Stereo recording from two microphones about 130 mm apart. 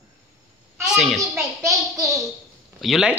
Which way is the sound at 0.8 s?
5° right (ahead or behind).